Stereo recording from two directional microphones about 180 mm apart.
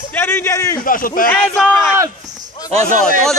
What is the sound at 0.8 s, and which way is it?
Speech, 50° left (ahead or behind).